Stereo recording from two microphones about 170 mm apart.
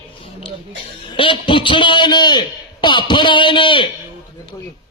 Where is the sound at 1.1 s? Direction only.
30° left (ahead or behind).